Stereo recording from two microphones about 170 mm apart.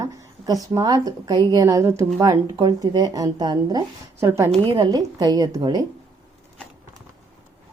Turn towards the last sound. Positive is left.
turn(degrees=-25)  # may be behind; listen again after turning